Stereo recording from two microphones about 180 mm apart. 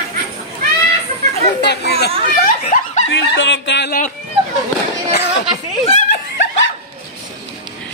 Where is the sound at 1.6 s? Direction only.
65° left (ahead or behind).